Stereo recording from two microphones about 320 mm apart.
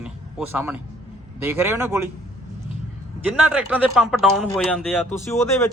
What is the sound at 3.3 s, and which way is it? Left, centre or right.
Speech, centre.